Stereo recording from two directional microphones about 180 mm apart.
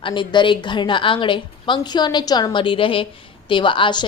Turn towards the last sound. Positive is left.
turn(degrees=25)  # may be behind; listen again after turning